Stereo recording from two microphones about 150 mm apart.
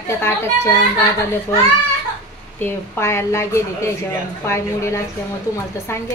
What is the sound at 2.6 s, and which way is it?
A woman's voice, 15° left (ahead or behind).